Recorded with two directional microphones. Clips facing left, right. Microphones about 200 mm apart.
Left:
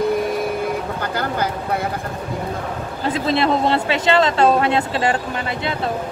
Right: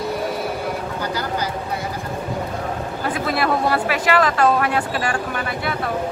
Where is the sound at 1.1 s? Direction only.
55° left (ahead or behind).